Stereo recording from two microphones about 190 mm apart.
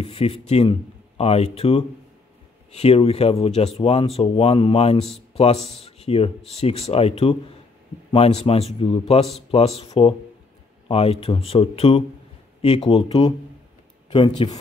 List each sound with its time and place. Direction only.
0.0 s a man's voice: 30° left (ahead or behind)
10.9 s a man's voice: 30° left (ahead or behind)
14.1 s speech: 25° left (ahead or behind)